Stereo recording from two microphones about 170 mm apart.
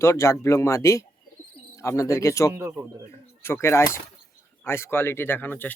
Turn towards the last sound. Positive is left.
turn(degrees=10)  # may be behind; listen again after turning